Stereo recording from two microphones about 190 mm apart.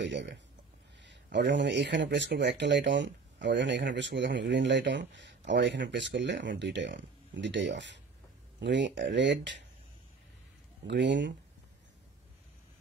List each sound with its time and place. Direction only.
0.0 s speech: 65° right (ahead or behind)
10.9 s speech: 70° right (ahead or behind)